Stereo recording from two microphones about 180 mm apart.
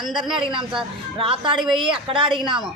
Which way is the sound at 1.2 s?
30° right (ahead or behind).